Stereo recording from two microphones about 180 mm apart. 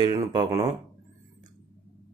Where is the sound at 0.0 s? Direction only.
20° right (ahead or behind).